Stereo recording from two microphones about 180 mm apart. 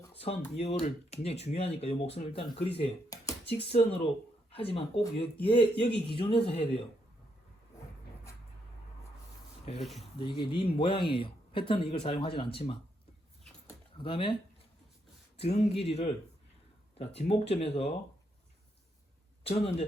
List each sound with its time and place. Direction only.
0.5 s speech: 35° left (ahead or behind)
3.1 s a sound: 20° left (ahead or behind)
3.6 s speech: 35° left (ahead or behind)
10.0 s speech: 25° left (ahead or behind)
14.0 s speech: 30° left (ahead or behind)
15.4 s speech: 35° left (ahead or behind)
19.5 s speech: 35° left (ahead or behind)